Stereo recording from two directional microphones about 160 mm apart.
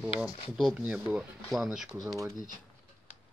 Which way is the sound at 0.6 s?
5° right (ahead or behind).